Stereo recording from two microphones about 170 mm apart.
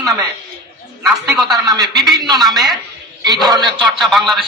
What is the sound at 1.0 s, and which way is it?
Speech, centre (ahead or behind).